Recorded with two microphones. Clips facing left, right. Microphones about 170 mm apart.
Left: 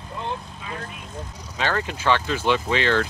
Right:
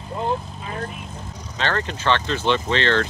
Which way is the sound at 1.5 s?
10° left (ahead or behind).